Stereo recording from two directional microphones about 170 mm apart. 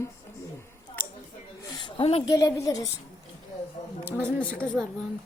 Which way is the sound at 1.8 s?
35° left (ahead or behind).